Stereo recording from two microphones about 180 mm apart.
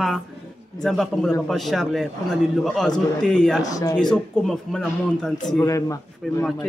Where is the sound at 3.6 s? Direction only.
20° left (ahead or behind).